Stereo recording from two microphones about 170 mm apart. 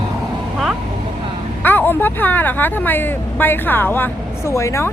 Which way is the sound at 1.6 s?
10° left (ahead or behind).